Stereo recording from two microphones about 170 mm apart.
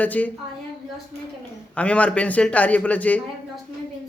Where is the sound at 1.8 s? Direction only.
5° left (ahead or behind).